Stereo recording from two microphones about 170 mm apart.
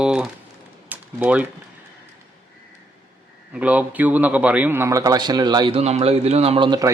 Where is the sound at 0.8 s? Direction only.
10° right (ahead or behind).